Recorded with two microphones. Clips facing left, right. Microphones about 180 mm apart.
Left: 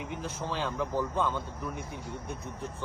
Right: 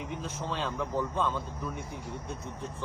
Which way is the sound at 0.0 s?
80° left.